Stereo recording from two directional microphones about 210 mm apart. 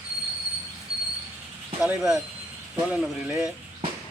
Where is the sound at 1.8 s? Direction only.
5° right (ahead or behind).